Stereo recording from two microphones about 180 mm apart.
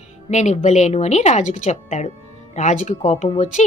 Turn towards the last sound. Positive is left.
turn(degrees=40)  # may be behind; listen again after turning